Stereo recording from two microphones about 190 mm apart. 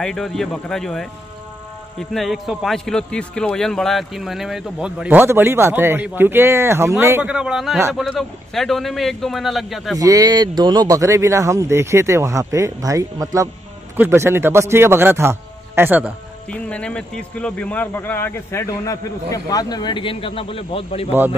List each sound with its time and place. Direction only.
0.0 s a man's voice: centre (ahead or behind)
9.9 s speech: 20° right (ahead or behind)
16.4 s speech: 5° left (ahead or behind); by 21.1 s 30° left (ahead or behind)